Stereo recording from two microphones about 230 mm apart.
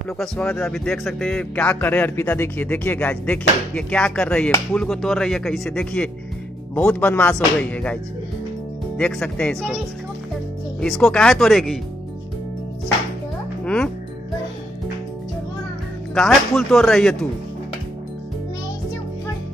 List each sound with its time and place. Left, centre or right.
0.2 s speech: centre
10.8 s speech: centre
16.2 s speech: centre